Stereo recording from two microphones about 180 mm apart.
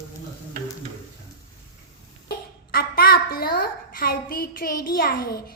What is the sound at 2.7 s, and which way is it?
A child's voice, 55° left (ahead or behind).